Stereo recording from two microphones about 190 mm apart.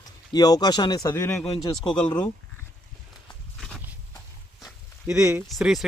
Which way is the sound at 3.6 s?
Centre (ahead or behind).